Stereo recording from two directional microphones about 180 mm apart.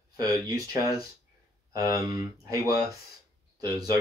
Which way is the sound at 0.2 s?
20° right (ahead or behind).